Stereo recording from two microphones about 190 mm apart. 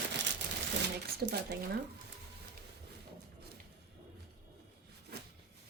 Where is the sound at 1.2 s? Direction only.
60° right (ahead or behind).